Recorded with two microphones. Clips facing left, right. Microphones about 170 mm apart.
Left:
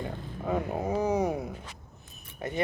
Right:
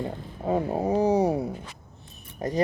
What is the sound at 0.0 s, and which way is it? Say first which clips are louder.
Speech: right 4 dB; 30° right (ahead or behind).